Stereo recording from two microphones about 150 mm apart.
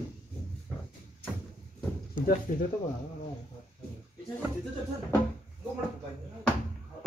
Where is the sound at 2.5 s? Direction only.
60° left (ahead or behind).